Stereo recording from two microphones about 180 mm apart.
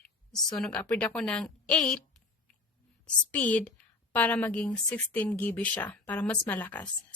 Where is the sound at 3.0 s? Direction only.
10° left (ahead or behind).